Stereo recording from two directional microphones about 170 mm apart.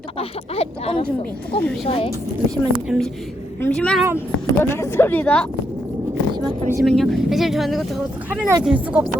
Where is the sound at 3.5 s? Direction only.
10° left (ahead or behind).